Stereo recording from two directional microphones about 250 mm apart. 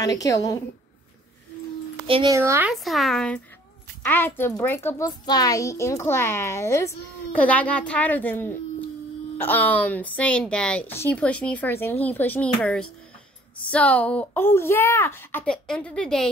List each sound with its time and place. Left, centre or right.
0.0 s a child's voice: centre
2.0 s speech: right
2.3 s a woman's voice: centre
2.7 s a child's voice: centre